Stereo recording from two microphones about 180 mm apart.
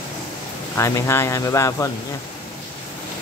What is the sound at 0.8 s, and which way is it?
Speech, 15° left (ahead or behind).